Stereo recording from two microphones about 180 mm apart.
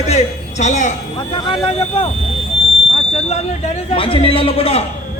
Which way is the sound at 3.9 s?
30° left (ahead or behind).